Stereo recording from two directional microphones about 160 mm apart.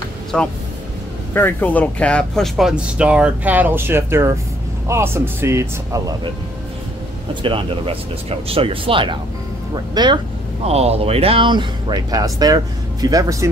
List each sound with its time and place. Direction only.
0.3 s speech: 5° left (ahead or behind); by 6.3 s 20° right (ahead or behind)
7.4 s speech: 35° right (ahead or behind)
10.6 s speech: 40° right (ahead or behind); by 13.5 s 20° right (ahead or behind)